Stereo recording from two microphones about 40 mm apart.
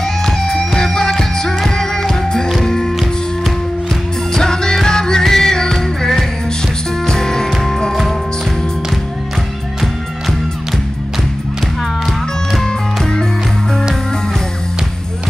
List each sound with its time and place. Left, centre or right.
0.0 s music: centre
4.3 s music: centre
12.6 s music: centre